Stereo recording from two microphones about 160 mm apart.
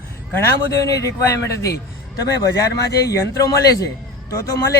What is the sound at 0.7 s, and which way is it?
Speech, 20° left (ahead or behind).